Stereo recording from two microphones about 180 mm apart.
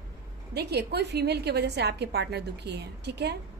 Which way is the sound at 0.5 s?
65° right (ahead or behind).